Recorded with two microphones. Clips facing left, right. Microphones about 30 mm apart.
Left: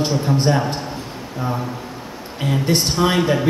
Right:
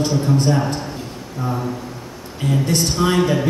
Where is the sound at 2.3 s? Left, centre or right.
Centre.